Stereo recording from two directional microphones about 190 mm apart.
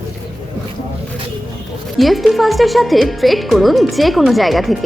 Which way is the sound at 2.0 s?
Centre (ahead or behind).